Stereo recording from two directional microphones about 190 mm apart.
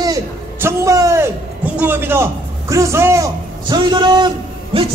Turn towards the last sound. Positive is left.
turn(degrees=-25)  # may be behind; listen again after turning